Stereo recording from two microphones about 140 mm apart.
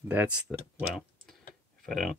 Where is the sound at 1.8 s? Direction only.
Centre (ahead or behind).